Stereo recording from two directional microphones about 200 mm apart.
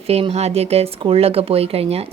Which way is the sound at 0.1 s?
30° right (ahead or behind).